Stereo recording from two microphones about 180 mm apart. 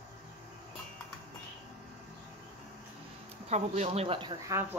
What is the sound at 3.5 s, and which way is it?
Speech, 40° right (ahead or behind).